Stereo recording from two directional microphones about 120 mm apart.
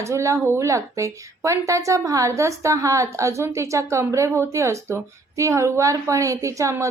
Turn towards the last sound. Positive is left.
turn(degrees=-25)  # may be behind; listen again after turning